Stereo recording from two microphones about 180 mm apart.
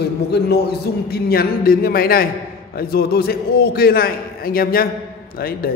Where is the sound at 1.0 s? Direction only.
60° left (ahead or behind).